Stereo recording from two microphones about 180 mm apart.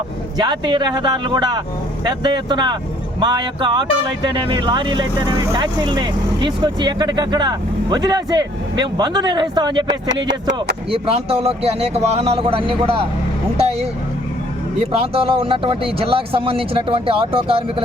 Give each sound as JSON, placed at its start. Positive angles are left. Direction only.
{"t": 0.3, "sound": "speech", "side_deg": -25}
{"t": 10.2, "sound": "speech", "side_deg": -75}
{"t": 10.9, "sound": "speech", "side_deg": -35}
{"t": 13.6, "sound": "a sound", "side_deg": -35}
{"t": 14.8, "sound": "speech", "side_deg": -30}